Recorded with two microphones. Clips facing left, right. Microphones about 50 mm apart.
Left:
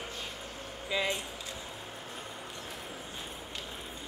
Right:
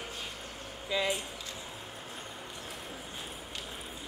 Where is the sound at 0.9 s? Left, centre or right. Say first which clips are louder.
Even; centre.